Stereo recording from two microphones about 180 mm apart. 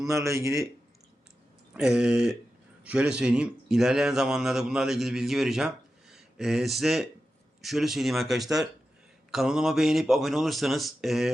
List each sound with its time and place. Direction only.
0.1 s a man's voice: 15° right (ahead or behind)
1.7 s speech: 5° right (ahead or behind)